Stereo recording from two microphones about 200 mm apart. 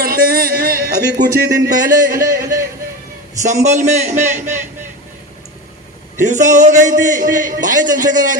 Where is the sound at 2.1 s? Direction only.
15° right (ahead or behind).